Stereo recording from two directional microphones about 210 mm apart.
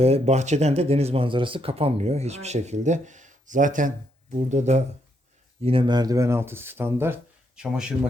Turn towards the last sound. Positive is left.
turn(degrees=-5)  # may be behind; listen again after turning